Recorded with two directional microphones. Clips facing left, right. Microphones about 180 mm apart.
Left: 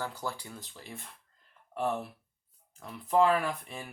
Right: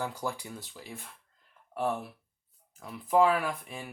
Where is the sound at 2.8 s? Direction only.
5° right (ahead or behind).